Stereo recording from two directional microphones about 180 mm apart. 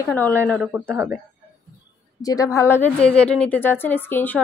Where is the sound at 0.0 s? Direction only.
10° left (ahead or behind).